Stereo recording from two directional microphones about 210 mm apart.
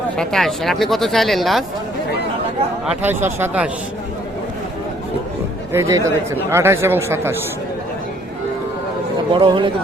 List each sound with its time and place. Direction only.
0.2 s speech: centre (ahead or behind)
2.8 s speech: 10° right (ahead or behind)
5.7 s speech: 15° right (ahead or behind)
9.3 s speech: 25° right (ahead or behind)